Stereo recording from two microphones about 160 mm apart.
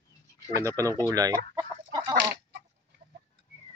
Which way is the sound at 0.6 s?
20° right (ahead or behind).